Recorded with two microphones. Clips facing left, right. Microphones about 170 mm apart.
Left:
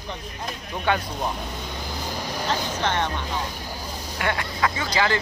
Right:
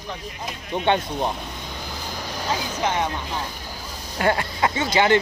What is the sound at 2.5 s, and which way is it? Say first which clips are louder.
Speech: right 2 dB; 10° right (ahead or behind).